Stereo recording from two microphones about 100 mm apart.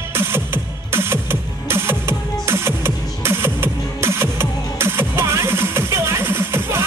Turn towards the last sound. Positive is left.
turn(degrees=-25)  # may be behind; listen again after turning